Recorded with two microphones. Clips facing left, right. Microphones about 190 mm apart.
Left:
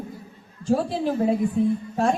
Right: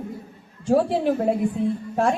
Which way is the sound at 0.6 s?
65° right (ahead or behind).